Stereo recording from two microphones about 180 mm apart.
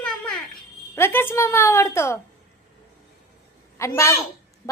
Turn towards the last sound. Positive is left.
turn(degrees=15)  # may be behind; listen again after turning